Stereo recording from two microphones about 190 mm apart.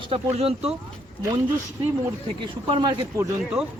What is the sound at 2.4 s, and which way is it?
Speech, 25° right (ahead or behind).